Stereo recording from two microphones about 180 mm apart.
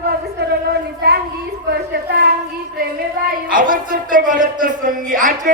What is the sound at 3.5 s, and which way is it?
Speech, 50° right (ahead or behind).